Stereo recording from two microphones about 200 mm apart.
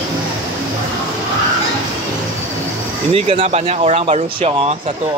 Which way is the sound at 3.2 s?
30° right (ahead or behind).